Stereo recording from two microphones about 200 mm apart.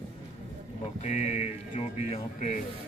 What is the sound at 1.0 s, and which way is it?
Speech, 35° left (ahead or behind).